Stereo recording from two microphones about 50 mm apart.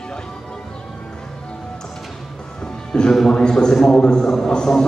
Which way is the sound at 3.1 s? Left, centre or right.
Centre.